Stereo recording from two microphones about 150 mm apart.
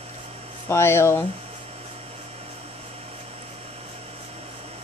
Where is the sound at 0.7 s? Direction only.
15° left (ahead or behind).